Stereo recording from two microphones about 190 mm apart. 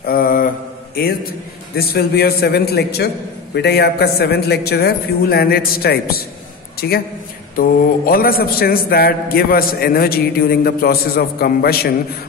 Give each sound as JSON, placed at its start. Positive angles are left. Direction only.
{"t": 0.0, "sound": "mantra", "side_deg": 50}
{"t": 1.8, "sound": "a man's voice", "side_deg": 55}